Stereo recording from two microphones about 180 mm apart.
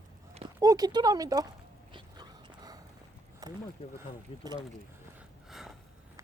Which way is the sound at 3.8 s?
35° left (ahead or behind).